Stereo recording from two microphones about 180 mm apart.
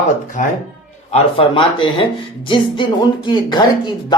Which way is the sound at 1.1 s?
30° left (ahead or behind).